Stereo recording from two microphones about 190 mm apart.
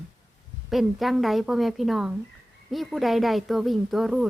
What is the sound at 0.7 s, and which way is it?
Speech, centre (ahead or behind).